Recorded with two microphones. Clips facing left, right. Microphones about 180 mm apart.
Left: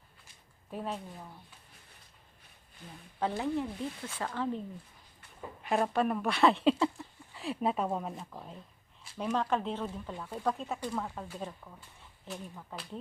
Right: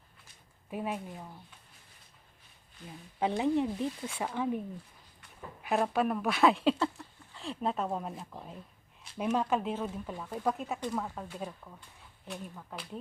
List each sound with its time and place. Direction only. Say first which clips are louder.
0.7 s speech: right 2 dB; 10° right (ahead or behind)
3.2 s speech: right 4 dB; 15° right (ahead or behind)
5.6 s speech: even; 5° right (ahead or behind)